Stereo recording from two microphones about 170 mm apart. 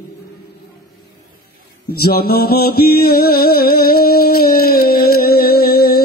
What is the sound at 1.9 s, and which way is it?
Mantra, 60° left (ahead or behind).